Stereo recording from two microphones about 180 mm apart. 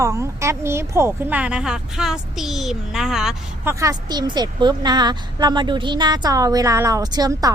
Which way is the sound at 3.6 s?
20° right (ahead or behind).